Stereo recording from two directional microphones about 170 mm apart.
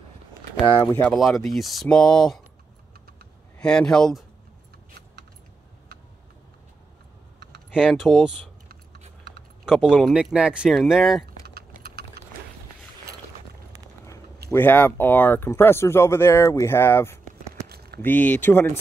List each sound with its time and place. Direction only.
0.9 s speech: 5° left (ahead or behind)
3.5 s speech: 5° left (ahead or behind)
7.7 s speech: 5° right (ahead or behind)
9.7 s speech: 5° right (ahead or behind)
11.4 s typing: 65° right (ahead or behind)
14.5 s speech: 10° left (ahead or behind)
17.6 s a sound: 70° right (ahead or behind)
18.0 s speech: 10° left (ahead or behind)